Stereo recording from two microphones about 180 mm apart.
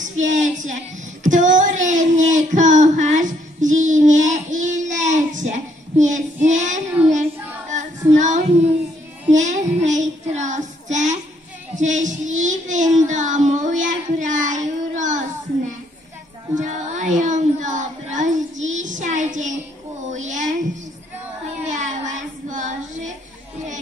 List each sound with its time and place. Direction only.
0.0 s a woman's voice: 45° right (ahead or behind)
1.2 s child singing: 45° right (ahead or behind)
16.5 s child singing: 40° right (ahead or behind)
18.7 s a sound: 45° right (ahead or behind)
21.6 s child singing: 45° right (ahead or behind)